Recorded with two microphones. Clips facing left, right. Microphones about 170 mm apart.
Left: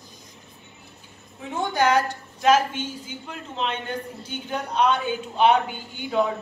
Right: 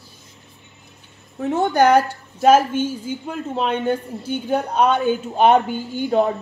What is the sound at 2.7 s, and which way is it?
Speech, 10° right (ahead or behind).